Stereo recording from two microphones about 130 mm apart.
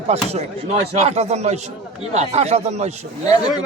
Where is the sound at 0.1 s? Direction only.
55° right (ahead or behind).